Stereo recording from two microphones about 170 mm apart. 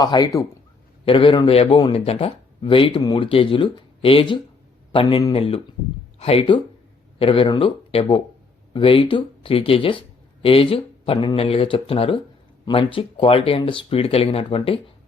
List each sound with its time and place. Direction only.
0.0 s a man's voice: 25° left (ahead or behind)